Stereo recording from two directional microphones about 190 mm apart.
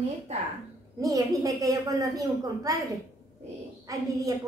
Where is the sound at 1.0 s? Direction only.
20° right (ahead or behind).